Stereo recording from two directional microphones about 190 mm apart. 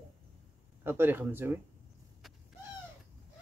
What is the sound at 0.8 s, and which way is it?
Speech, 10° right (ahead or behind).